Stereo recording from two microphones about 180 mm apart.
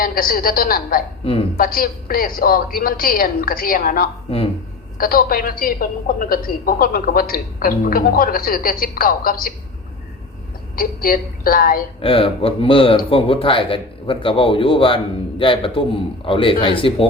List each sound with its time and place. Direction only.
0.0 s a woman's voice: 50° left (ahead or behind)
1.2 s a woman's voice: 30° left (ahead or behind)
1.5 s a woman's voice: 55° left (ahead or behind)
10.8 s a woman's voice: 55° left (ahead or behind)
11.9 s speech: 30° left (ahead or behind)